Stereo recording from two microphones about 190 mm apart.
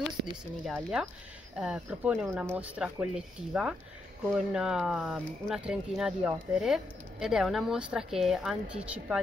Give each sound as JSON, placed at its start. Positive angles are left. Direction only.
{"t": 0.7, "sound": "speech", "side_deg": 0}